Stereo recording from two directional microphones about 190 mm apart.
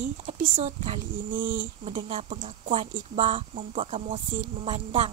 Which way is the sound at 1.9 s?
30° right (ahead or behind).